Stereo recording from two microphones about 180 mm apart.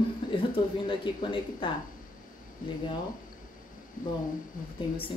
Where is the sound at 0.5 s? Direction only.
30° left (ahead or behind).